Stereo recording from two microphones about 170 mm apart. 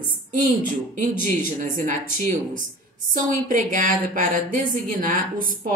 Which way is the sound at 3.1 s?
50° right (ahead or behind).